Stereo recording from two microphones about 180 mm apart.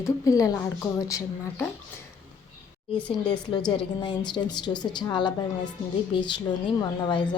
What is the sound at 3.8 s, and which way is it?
Speech, 25° left (ahead or behind).